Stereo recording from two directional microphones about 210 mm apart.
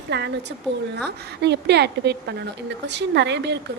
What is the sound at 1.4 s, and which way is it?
A woman's voice, 55° right (ahead or behind).